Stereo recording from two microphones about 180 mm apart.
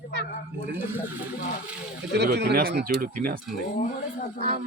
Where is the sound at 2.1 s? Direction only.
70° right (ahead or behind).